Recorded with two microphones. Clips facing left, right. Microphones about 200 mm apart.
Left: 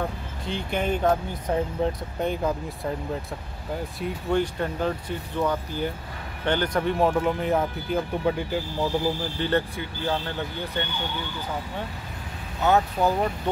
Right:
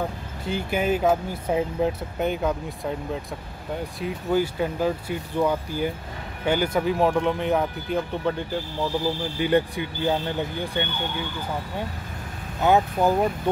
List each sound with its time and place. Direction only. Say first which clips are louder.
0.5 s speech: right 3 dB; 5° right (ahead or behind)
9.4 s speech: right 5 dB; 15° right (ahead or behind)
12.6 s speech: right 2 dB; 15° right (ahead or behind)